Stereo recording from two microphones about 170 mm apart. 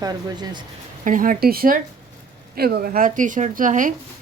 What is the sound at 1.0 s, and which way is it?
A woman's voice, 50° right (ahead or behind).